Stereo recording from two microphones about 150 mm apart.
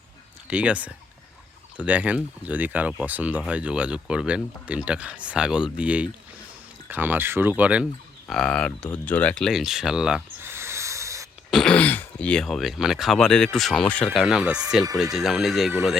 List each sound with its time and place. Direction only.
0.4 s speech: 10° right (ahead or behind)
8.3 s speech: 5° left (ahead or behind)
10.4 s snort: 15° right (ahead or behind)
11.5 s speech: 5° left (ahead or behind)